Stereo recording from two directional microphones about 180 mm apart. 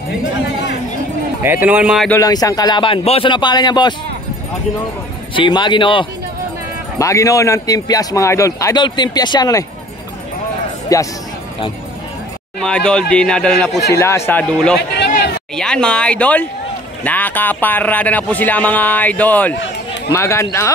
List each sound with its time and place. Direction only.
1.4 s speech: 10° right (ahead or behind)
2.0 s a man's voice: 20° left (ahead or behind)
5.3 s a man's voice: 25° left (ahead or behind)
7.0 s a man's voice: 15° left (ahead or behind)
10.9 s a man's voice: 20° left (ahead or behind)
12.5 s speech: 5° left (ahead or behind)
14.8 s a sound: 60° left (ahead or behind)
15.5 s speech: 5° left (ahead or behind)